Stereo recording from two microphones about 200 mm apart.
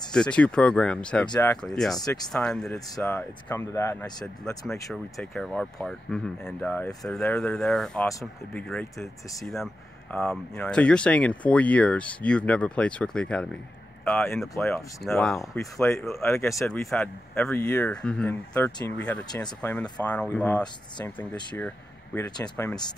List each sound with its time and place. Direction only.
0.1 s speech: 5° left (ahead or behind)
1.3 s speech: 15° left (ahead or behind)
1.6 s speech: centre (ahead or behind)
2.0 s speech: 20° left (ahead or behind)
2.3 s speech: centre (ahead or behind)
4.9 s speech: centre (ahead or behind)
8.1 s speech: 15° left (ahead or behind)
8.6 s speech: centre (ahead or behind)
10.1 s speech: 5° left (ahead or behind)
15.3 s speech: 15° left (ahead or behind)
16.5 s speech: centre (ahead or behind); by 22.9 s 15° left (ahead or behind)